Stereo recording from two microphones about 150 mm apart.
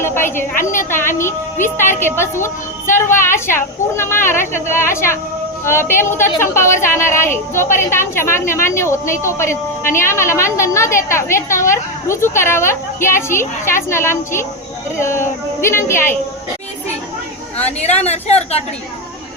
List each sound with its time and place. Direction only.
0.0 s a woman's voice: 15° left (ahead or behind)
17.7 s a woman's voice: 45° left (ahead or behind)